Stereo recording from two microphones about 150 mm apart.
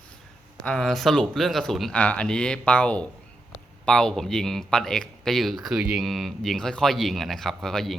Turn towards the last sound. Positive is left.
turn(degrees=0)  # may be behind; listen again after turning